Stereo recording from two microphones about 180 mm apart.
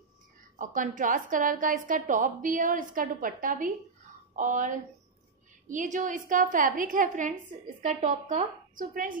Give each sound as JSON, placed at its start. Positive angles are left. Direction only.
{"t": 0.6, "sound": "a woman's voice", "side_deg": -45}